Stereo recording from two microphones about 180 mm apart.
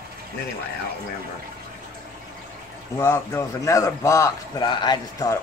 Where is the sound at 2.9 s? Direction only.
15° left (ahead or behind).